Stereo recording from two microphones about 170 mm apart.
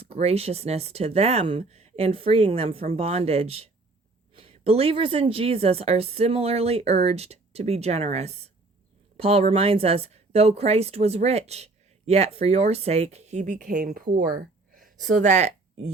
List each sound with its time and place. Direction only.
0.0 s speech: 35° right (ahead or behind)